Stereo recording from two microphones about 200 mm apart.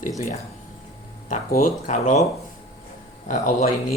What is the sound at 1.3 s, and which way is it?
Speech, 45° left (ahead or behind).